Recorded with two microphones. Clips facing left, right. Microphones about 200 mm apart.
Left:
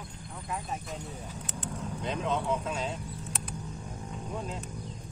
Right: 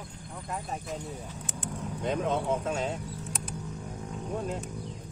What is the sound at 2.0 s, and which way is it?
Speech, 50° right (ahead or behind).